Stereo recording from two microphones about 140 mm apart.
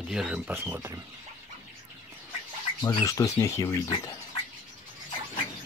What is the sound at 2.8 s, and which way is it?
Speech, 25° left (ahead or behind).